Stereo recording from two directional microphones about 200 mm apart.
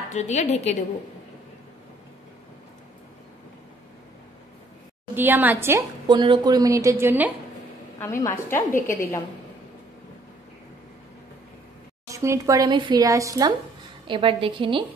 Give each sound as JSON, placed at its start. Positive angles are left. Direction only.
{"t": 0.1, "sound": "a woman's voice", "side_deg": 35}
{"t": 5.1, "sound": "a woman's voice", "side_deg": -10}
{"t": 8.0, "sound": "a woman's voice", "side_deg": 15}
{"t": 12.1, "sound": "a woman's voice", "side_deg": -15}